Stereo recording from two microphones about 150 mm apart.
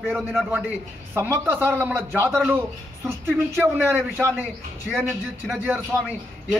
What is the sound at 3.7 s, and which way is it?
Speech, 15° right (ahead or behind).